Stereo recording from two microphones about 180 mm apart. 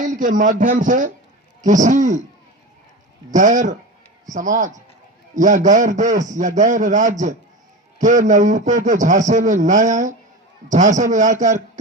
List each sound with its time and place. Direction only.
0.0 s a man's voice: 45° right (ahead or behind)
3.3 s a man's voice: 45° right (ahead or behind)